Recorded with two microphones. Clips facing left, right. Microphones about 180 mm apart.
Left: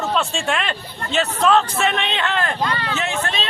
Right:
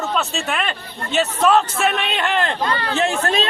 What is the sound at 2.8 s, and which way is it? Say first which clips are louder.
Speech: right 4 dB; 35° right (ahead or behind).